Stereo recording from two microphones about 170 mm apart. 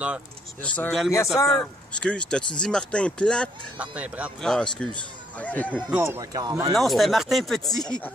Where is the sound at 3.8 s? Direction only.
10° right (ahead or behind).